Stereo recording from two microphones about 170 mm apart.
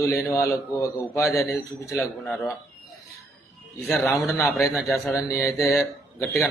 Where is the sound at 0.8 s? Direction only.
20° left (ahead or behind).